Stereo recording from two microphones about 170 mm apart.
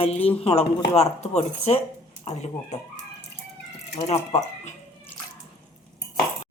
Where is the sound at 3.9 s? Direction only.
40° left (ahead or behind).